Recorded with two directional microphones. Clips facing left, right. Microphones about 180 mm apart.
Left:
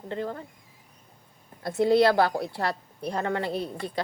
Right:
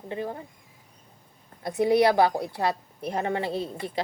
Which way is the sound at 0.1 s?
15° right (ahead or behind).